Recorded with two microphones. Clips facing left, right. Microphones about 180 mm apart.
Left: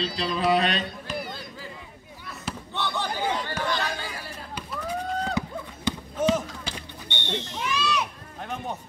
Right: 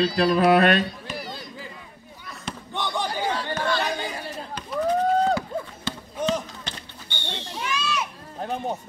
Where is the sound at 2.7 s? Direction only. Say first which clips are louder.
Right 2 dB; 15° right (ahead or behind).